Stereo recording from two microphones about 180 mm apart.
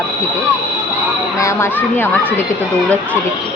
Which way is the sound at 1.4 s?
15° left (ahead or behind).